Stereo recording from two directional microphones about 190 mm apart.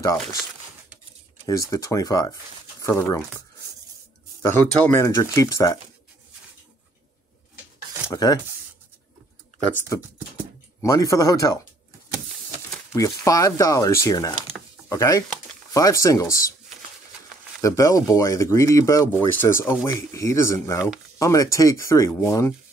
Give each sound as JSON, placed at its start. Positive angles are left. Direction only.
{"t": 0.0, "sound": "speech", "side_deg": 15}
{"t": 1.4, "sound": "speech", "side_deg": 15}
{"t": 8.1, "sound": "speech", "side_deg": 20}
{"t": 9.9, "sound": "speech", "side_deg": 15}
{"t": 12.9, "sound": "speech", "side_deg": 15}
{"t": 17.6, "sound": "speech", "side_deg": 15}